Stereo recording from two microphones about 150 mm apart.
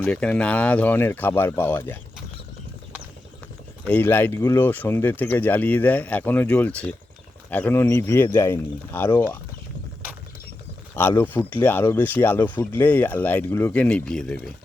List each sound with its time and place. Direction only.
0.0 s speech: 5° left (ahead or behind)
3.8 s speech: 10° left (ahead or behind)
10.9 s speech: 15° left (ahead or behind)